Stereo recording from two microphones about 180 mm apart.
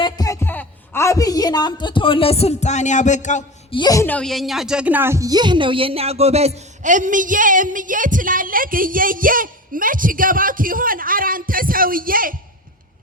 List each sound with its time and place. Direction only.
0.0 s a sound: 20° left (ahead or behind)
0.4 s speech: 10° left (ahead or behind); by 3.8 s 40° left (ahead or behind)
3.8 s speech: 20° left (ahead or behind); by 12.3 s 50° right (ahead or behind)